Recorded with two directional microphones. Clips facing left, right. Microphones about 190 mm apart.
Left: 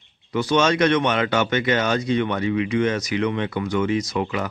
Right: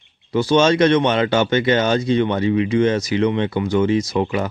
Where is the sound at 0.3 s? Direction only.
30° right (ahead or behind).